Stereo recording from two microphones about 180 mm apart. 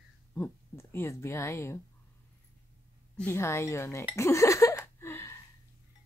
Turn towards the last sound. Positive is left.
turn(degrees=15)  # may be behind; listen again after turning